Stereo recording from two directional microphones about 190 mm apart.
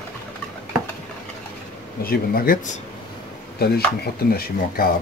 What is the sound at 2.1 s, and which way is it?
Speech, 50° left (ahead or behind).